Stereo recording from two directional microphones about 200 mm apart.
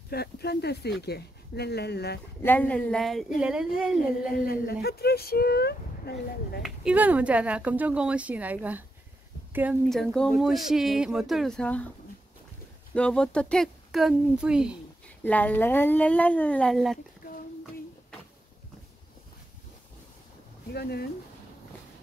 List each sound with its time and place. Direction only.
0.1 s speech: 55° left (ahead or behind)
2.4 s speech: 10° left (ahead or behind)
4.8 s speech: 50° left (ahead or behind)
6.6 s a woman's voice: 5° right (ahead or behind)
9.8 s speech: 5° left (ahead or behind)
12.9 s speech: 5° left (ahead or behind)
15.2 s speech: 10° left (ahead or behind)
20.7 s speech: 55° left (ahead or behind)